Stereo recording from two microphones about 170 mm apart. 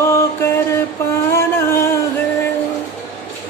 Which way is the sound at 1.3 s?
15° left (ahead or behind).